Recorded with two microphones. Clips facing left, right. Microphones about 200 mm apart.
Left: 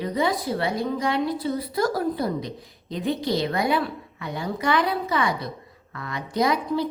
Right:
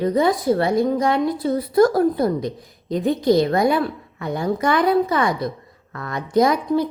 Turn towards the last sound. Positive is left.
turn(degrees=-45)  # may be behind; listen again after turning